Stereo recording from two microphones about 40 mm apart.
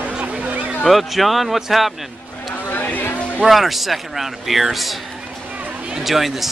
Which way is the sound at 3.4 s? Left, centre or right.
Centre.